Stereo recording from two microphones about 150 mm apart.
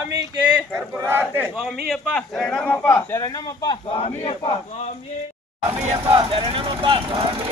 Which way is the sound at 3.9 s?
40° left (ahead or behind).